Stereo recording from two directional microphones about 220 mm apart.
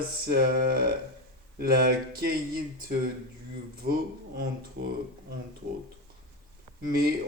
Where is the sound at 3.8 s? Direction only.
40° right (ahead or behind).